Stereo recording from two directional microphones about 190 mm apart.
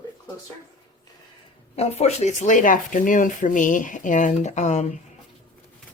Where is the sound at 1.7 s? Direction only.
35° left (ahead or behind).